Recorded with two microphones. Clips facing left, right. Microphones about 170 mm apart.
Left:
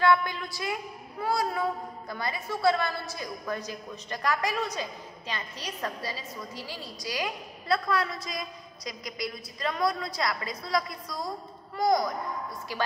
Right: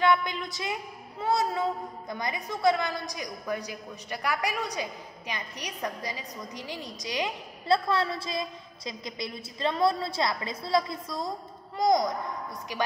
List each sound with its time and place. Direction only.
0.0 s a woman's voice: 20° right (ahead or behind)